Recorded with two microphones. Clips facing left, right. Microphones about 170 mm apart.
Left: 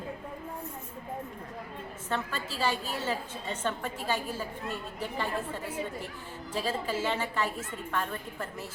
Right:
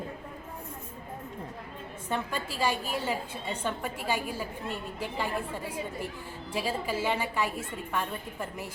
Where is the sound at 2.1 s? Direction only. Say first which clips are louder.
Right 1 dB; 15° right (ahead or behind).